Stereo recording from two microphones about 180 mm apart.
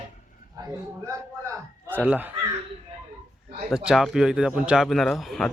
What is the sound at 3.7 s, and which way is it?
Speech, 5° right (ahead or behind).